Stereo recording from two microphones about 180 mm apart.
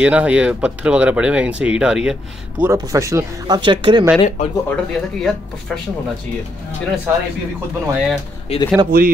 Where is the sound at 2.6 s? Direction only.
15° right (ahead or behind).